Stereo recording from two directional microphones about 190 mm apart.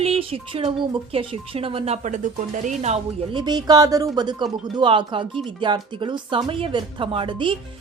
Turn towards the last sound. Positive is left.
turn(degrees=-25)  # may be behind; listen again after turning